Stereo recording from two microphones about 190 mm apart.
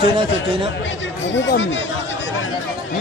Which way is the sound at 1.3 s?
75° left (ahead or behind).